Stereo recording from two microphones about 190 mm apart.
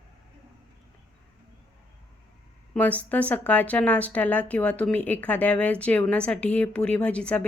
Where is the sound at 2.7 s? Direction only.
10° left (ahead or behind).